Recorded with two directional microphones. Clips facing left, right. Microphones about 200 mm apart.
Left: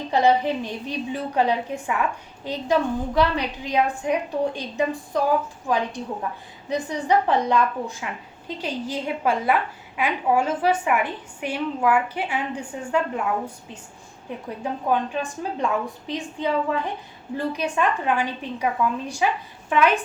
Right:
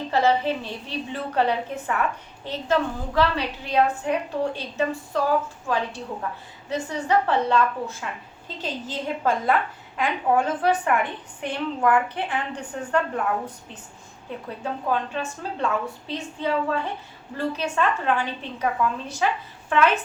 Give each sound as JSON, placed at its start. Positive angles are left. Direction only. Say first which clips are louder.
{"t": 0.1, "sound": "a woman's voice", "louder": "left 2 dB", "side_deg": 15}
{"t": 14.6, "sound": "a woman's voice", "louder": "left 3 dB", "side_deg": 15}